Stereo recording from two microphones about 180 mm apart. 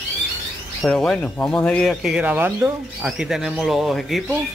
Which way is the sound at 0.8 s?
5° left (ahead or behind).